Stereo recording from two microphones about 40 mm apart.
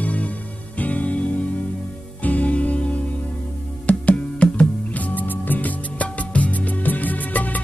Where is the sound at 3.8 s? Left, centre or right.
Left.